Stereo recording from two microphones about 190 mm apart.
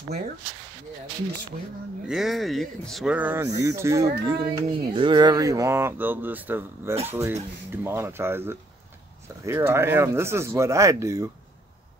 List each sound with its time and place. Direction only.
2.0 s speech: centre (ahead or behind)
4.3 s a child's voice: 25° right (ahead or behind)